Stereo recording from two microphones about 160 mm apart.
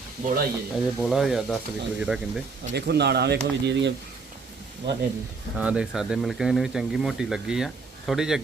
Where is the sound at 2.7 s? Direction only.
90° right.